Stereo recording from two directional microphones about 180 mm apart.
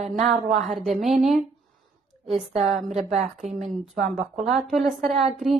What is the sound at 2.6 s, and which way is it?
Speech, centre (ahead or behind).